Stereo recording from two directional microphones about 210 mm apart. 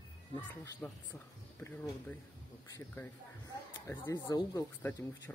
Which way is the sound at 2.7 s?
15° left (ahead or behind).